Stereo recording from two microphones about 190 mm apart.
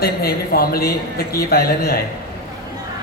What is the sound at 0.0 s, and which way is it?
A man's voice, 55° left (ahead or behind).